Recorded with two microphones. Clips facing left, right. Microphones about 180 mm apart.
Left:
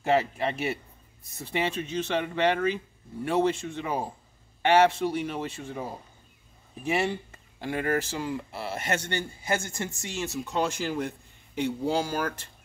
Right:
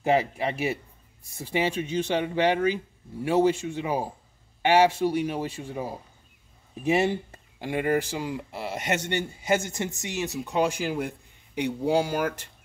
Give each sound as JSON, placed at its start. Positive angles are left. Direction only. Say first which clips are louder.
{"t": 0.0, "sound": "a man's voice", "louder": "right 1 dB", "side_deg": -10}
{"t": 6.8, "sound": "a man's voice", "louder": "right 4 dB", "side_deg": -20}